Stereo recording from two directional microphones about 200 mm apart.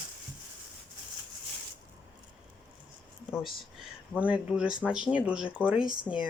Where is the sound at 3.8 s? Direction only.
5° right (ahead or behind).